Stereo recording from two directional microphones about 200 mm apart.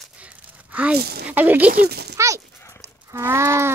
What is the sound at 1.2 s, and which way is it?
Speech, 10° right (ahead or behind).